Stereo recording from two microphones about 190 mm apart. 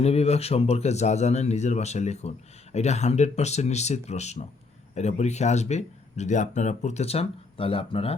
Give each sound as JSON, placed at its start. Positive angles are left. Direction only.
{"t": 0.0, "sound": "speech", "side_deg": 35}